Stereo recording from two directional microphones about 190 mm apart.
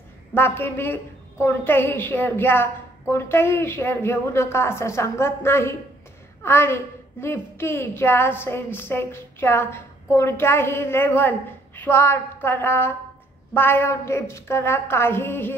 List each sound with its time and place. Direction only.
0.3 s a woman's voice: 10° left (ahead or behind)